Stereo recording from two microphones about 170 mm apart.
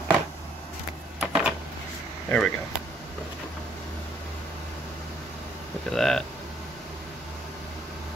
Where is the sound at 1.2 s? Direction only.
5° right (ahead or behind).